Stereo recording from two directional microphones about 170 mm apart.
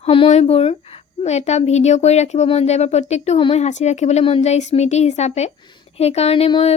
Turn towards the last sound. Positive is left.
turn(degrees=35)  # may be behind; listen again after turning